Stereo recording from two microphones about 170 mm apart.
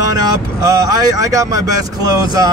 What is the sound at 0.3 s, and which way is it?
Speech, 20° right (ahead or behind).